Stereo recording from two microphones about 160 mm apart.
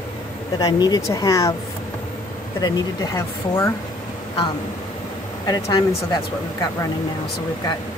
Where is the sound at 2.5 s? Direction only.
25° left (ahead or behind).